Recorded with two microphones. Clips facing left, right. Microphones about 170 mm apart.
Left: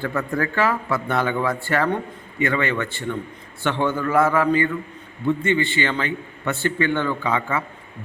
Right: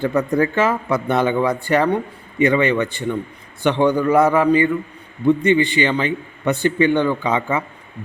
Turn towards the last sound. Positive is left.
turn(degrees=-20)  # may be behind; listen again after turning